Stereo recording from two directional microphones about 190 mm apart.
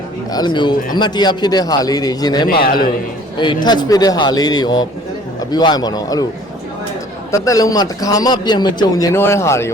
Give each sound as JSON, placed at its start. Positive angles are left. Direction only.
{"t": 0.3, "sound": "a man's voice", "side_deg": 25}
{"t": 2.5, "sound": "a man's voice", "side_deg": 55}
{"t": 3.3, "sound": "a man's voice", "side_deg": 25}
{"t": 7.3, "sound": "a man's voice", "side_deg": 15}